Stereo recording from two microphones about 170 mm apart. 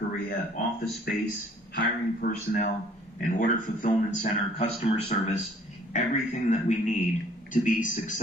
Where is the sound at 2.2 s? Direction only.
60° left (ahead or behind); by 5.4 s 40° left (ahead or behind).